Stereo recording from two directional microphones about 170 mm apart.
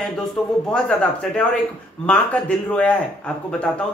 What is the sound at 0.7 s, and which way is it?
Speech, 5° left (ahead or behind).